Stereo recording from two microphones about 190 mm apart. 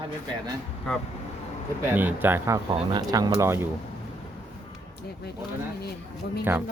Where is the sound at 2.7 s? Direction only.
25° right (ahead or behind).